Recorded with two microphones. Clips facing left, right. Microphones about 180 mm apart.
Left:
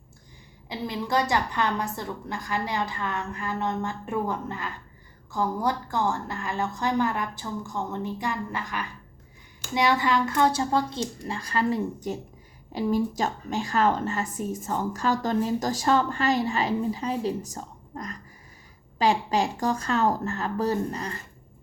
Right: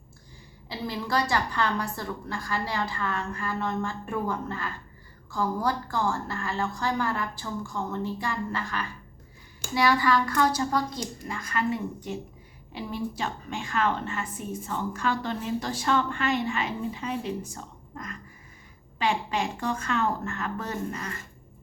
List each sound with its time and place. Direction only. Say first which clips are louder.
0.7 s a woman's voice: left 2 dB; 20° left (ahead or behind); by 21.2 s 35° left (ahead or behind)